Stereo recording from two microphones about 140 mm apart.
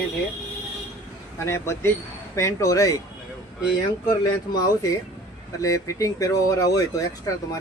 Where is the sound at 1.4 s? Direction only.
20° left (ahead or behind).